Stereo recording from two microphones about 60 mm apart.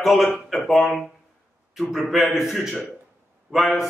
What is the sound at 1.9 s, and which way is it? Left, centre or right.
A man's voice, centre.